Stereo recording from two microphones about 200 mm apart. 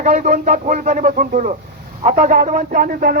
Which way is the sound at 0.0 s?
40° right (ahead or behind).